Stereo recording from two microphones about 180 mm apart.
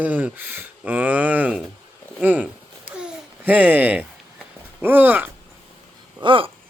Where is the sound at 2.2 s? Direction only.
10° right (ahead or behind).